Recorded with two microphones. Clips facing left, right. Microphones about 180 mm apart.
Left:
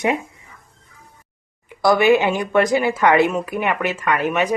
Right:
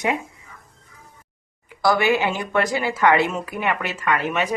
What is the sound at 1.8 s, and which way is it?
A woman's voice, 20° left (ahead or behind).